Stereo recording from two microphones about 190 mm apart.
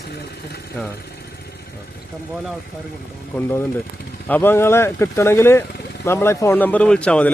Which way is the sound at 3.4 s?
15° left (ahead or behind).